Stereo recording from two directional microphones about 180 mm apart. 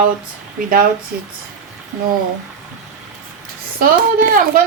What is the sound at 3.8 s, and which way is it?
Speech, 50° right (ahead or behind).